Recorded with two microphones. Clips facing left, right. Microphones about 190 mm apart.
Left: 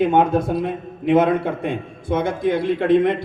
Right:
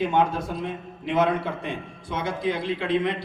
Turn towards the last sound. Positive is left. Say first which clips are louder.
# left 8 dB
turn(degrees=50)  # may be behind; listen again after turning